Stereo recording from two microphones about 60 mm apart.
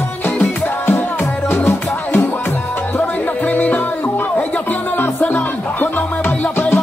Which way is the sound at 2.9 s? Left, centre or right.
Left.